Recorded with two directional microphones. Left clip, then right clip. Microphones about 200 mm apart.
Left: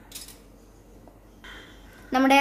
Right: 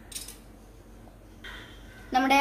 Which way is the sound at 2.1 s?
35° left (ahead or behind).